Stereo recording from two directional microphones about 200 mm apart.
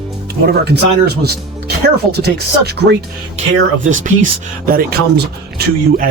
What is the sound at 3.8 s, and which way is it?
Speech, 40° right (ahead or behind).